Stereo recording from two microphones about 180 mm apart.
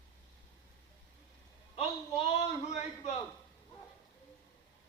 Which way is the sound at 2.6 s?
40° left (ahead or behind).